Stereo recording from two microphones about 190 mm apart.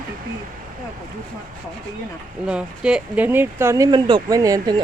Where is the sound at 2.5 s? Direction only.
5° right (ahead or behind).